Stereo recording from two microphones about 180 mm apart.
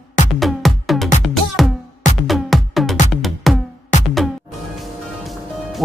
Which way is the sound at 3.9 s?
40° left (ahead or behind).